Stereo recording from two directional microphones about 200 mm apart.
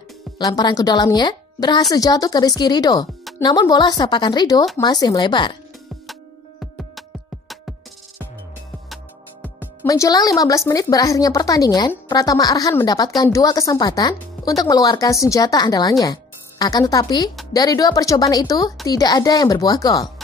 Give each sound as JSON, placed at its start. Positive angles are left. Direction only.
{"t": 0.4, "sound": "speech", "side_deg": 20}
{"t": 6.6, "sound": "music", "side_deg": 0}
{"t": 8.8, "sound": "music", "side_deg": 0}
{"t": 9.8, "sound": "a woman's voice", "side_deg": 20}